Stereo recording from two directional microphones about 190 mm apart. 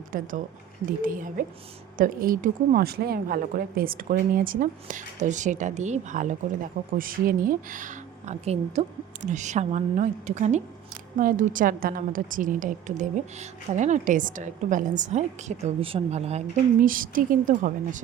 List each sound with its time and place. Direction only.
0.1 s a woman's voice: 45° right (ahead or behind)
16.8 s a woman's voice: 45° right (ahead or behind)